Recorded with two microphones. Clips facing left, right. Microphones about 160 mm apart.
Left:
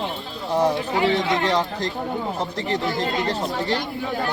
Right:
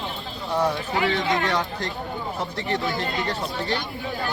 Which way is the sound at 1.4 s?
30° left (ahead or behind).